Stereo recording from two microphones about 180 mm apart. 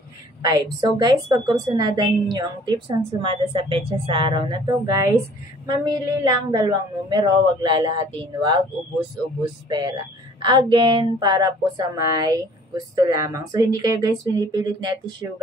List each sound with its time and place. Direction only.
0.4 s a woman's voice: 20° right (ahead or behind)
9.7 s a woman's voice: 25° right (ahead or behind)